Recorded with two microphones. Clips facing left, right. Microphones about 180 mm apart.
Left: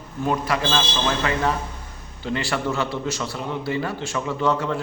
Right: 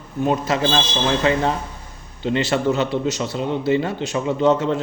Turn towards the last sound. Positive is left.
turn(degrees=-20)  # may be behind; listen again after turning